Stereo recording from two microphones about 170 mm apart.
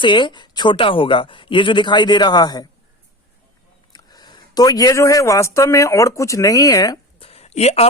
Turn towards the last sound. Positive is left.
turn(degrees=40)  # may be behind; listen again after turning